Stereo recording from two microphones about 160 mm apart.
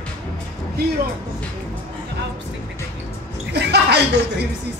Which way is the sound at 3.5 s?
90° right.